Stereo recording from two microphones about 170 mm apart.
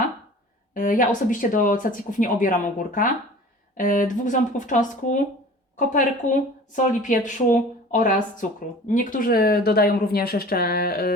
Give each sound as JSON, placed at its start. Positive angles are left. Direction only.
{"t": 0.7, "sound": "a woman's voice", "side_deg": 55}